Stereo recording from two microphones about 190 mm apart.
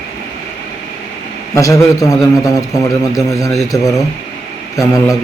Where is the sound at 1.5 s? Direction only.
15° left (ahead or behind).